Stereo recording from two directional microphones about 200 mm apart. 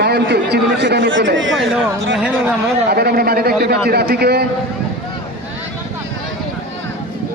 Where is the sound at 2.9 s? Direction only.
50° right (ahead or behind).